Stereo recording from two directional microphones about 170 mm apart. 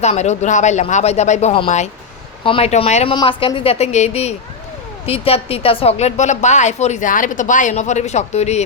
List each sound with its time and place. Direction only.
0.0 s a woman's voice: 40° left (ahead or behind)